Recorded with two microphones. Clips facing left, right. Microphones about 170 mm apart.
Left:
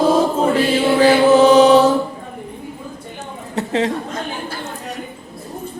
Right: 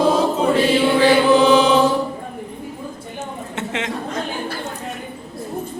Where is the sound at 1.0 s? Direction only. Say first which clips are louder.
Left 4 dB; 40° left (ahead or behind).